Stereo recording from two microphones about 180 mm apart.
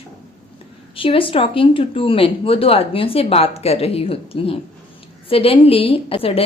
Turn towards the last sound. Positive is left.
turn(degrees=30)  # may be behind; listen again after turning